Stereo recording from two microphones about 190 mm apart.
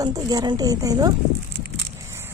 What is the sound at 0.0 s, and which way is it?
A woman's voice, 20° right (ahead or behind).